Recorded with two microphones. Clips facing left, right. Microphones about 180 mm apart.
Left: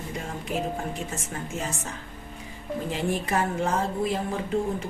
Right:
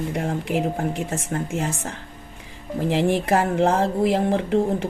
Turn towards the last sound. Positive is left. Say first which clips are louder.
# right 7 dB
turn(degrees=-75)  # may be behind; listen again after turning